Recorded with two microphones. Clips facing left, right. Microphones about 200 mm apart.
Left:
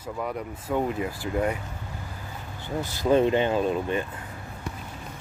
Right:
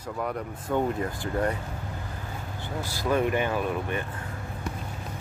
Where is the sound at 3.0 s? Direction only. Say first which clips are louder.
Left 4 dB; 25° left (ahead or behind).